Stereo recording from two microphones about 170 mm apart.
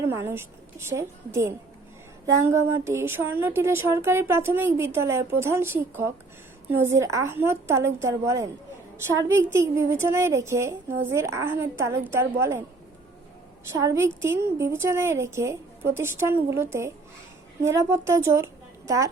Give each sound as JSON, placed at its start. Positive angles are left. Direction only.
{"t": 0.1, "sound": "a woman's voice", "side_deg": -15}
{"t": 13.7, "sound": "a woman's voice", "side_deg": -15}